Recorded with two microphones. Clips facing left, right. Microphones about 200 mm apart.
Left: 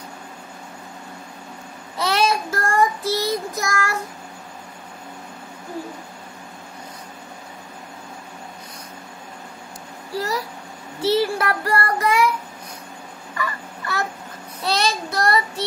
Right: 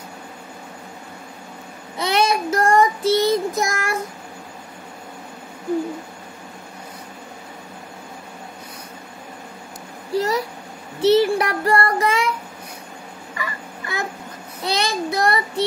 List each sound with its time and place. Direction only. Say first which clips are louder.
2.0 s child singing: right 1 dB; 20° right (ahead or behind)
10.1 s a sound: right 5 dB; 20° right (ahead or behind)
11.0 s child singing: right 4 dB; 20° right (ahead or behind)
13.4 s a sound: left 3 dB; 15° right (ahead or behind)
14.6 s child singing: left 1 dB; 15° right (ahead or behind)
15.2 s child singing: left 2 dB; 60° right (ahead or behind)